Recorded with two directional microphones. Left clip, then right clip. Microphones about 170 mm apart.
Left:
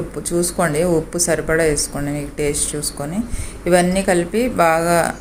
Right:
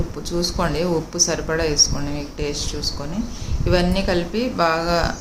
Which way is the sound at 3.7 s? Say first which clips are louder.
Left 5 dB; 25° left (ahead or behind).